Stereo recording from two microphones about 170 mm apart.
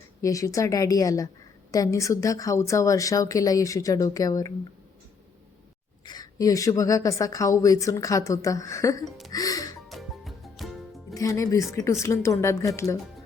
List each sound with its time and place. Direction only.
0.2 s a woman's voice: 20° left (ahead or behind)
6.1 s a woman's voice: 20° left (ahead or behind)
9.0 s speech: centre (ahead or behind)
9.3 s music: 20° left (ahead or behind)
9.9 s music: centre (ahead or behind)
11.1 s speech: 20° left (ahead or behind)